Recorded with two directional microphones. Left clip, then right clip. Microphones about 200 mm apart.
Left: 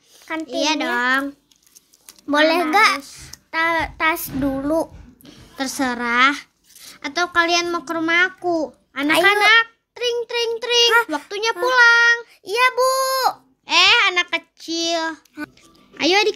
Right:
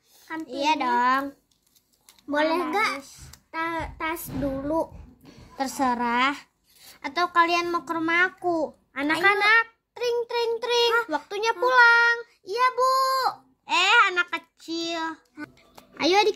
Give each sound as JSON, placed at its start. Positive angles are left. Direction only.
{"t": 0.4, "sound": "a child's voice", "side_deg": 5}
{"t": 2.2, "sound": "a child's voice", "side_deg": 50}
{"t": 5.6, "sound": "a child's voice", "side_deg": 5}
{"t": 12.3, "sound": "a child's voice", "side_deg": 40}
{"t": 13.7, "sound": "a child's voice", "side_deg": 5}